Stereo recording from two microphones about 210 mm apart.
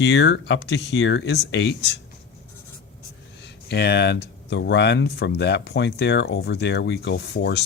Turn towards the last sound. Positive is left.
turn(degrees=55)  # may be behind; listen again after turning